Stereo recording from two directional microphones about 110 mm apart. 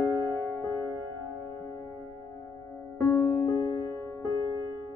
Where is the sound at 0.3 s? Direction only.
25° left (ahead or behind).